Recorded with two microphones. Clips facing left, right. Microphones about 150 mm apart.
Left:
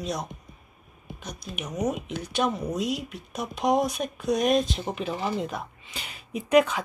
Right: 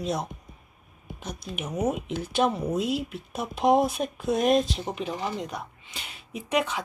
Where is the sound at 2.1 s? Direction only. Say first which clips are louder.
Right 2 dB; 30° right (ahead or behind).